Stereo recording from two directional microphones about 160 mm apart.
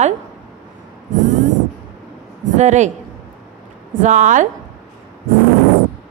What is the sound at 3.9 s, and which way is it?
Speech, 50° right (ahead or behind).